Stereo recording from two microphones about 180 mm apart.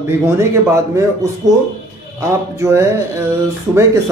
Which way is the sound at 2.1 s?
15° right (ahead or behind).